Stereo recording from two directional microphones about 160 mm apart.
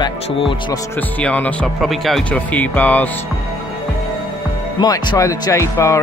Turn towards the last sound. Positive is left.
turn(degrees=20)  # may be behind; listen again after turning